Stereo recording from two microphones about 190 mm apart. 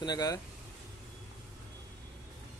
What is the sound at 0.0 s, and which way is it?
Speech, 20° left (ahead or behind).